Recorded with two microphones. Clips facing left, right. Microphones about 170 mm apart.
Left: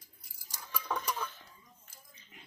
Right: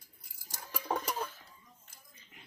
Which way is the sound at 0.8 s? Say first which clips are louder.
Right 2 dB; 35° right (ahead or behind).